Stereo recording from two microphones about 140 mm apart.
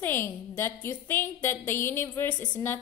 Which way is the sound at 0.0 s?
15° left (ahead or behind).